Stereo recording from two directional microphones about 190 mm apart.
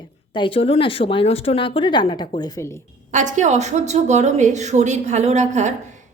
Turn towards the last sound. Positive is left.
turn(degrees=-40)  # may be behind; listen again after turning